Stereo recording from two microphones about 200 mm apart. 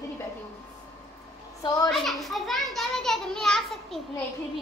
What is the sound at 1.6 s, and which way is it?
Speech, 20° left (ahead or behind).